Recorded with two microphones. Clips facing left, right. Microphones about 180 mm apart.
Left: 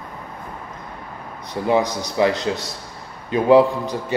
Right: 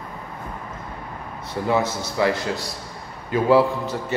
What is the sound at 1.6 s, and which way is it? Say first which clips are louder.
A man's voice: left 3 dB; 15° left (ahead or behind).